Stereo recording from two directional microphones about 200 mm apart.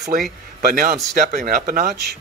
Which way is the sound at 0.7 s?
45° right (ahead or behind).